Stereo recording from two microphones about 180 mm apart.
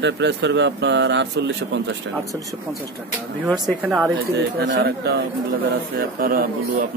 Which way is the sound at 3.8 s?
5° right (ahead or behind).